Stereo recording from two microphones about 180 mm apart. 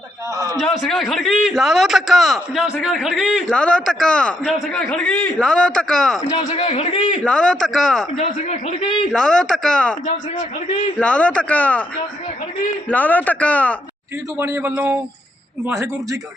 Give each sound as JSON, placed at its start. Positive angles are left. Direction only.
{"t": 0.6, "sound": "a man's voice", "side_deg": 0}
{"t": 3.5, "sound": "a man's voice", "side_deg": 5}
{"t": 6.3, "sound": "a man's voice", "side_deg": 35}
{"t": 7.3, "sound": "a man's voice", "side_deg": 5}
{"t": 8.2, "sound": "a man's voice", "side_deg": 40}
{"t": 9.1, "sound": "a man's voice", "side_deg": 5}
{"t": 10.9, "sound": "speech", "side_deg": 5}
{"t": 12.9, "sound": "speech", "side_deg": 10}
{"t": 14.3, "sound": "speech", "side_deg": -15}